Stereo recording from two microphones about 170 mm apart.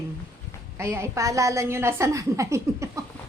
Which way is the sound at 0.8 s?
15° right (ahead or behind).